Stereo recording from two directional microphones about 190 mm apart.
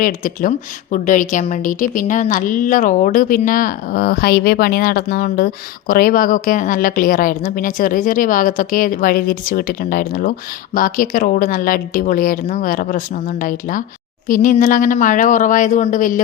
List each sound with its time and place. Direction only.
0.0 s a woman's voice: 45° left (ahead or behind)